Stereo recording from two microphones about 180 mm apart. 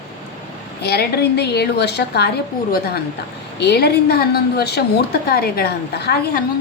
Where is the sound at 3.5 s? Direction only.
65° left (ahead or behind).